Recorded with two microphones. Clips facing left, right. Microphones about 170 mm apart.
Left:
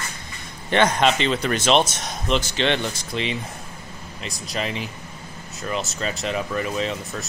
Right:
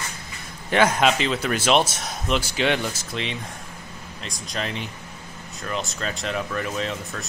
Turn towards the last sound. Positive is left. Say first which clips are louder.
# left 2 dB
turn(degrees=0)  # may be behind; listen again after turning